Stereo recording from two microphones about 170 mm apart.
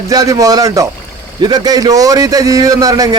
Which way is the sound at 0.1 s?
20° right (ahead or behind).